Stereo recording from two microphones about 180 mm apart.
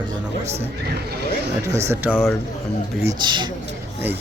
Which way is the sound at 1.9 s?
10° right (ahead or behind).